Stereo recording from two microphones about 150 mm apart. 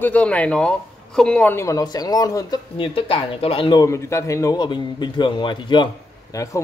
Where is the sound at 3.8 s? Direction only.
20° left (ahead or behind).